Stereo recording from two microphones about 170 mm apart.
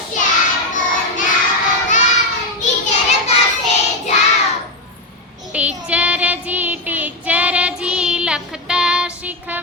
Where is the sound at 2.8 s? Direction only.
40° left (ahead or behind).